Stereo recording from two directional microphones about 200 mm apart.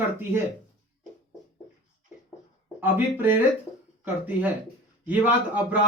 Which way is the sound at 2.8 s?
10° right (ahead or behind).